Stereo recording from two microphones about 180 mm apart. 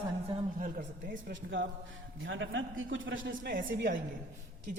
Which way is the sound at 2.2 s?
90° right.